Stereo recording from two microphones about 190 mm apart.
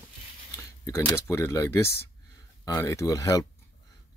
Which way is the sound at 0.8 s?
15° left (ahead or behind).